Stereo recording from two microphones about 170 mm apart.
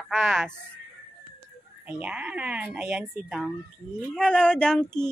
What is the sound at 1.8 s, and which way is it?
Speech, 5° right (ahead or behind).